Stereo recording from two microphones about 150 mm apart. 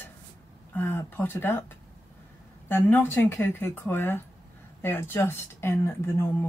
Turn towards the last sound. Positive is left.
turn(degrees=15)  # may be behind; listen again after turning